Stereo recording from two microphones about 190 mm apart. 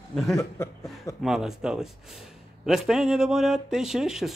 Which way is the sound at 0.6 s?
15° left (ahead or behind).